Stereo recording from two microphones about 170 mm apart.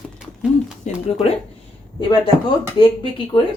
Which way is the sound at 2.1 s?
30° left (ahead or behind).